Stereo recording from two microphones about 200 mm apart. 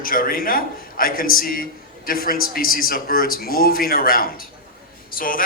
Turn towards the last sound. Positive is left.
turn(degrees=45)  # may be behind; listen again after turning